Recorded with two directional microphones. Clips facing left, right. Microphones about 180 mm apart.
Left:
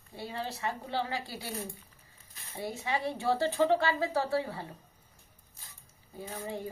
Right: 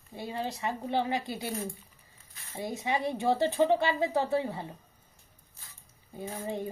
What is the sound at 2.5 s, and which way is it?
Speech, 20° right (ahead or behind).